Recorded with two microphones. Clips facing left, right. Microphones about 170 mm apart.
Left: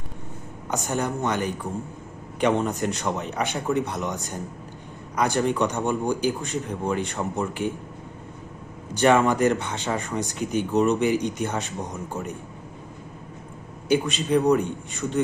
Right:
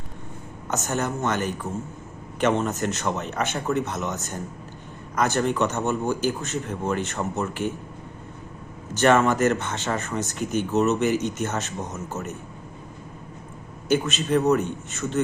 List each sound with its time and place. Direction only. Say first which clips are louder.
0.7 s a man's voice: even; 15° left (ahead or behind)
9.0 s a man's voice: even; 15° left (ahead or behind)
13.9 s a man's voice: left 1 dB; 15° left (ahead or behind)